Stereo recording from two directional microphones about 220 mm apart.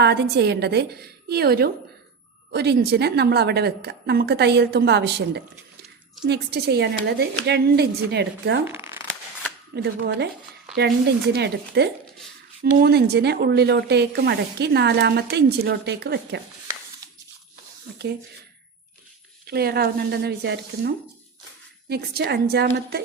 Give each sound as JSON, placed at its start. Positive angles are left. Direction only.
{"t": 0.0, "sound": "speech", "side_deg": -50}
{"t": 8.6, "sound": "shuffling cards", "side_deg": -10}
{"t": 9.7, "sound": "speech", "side_deg": -50}
{"t": 19.5, "sound": "speech", "side_deg": -45}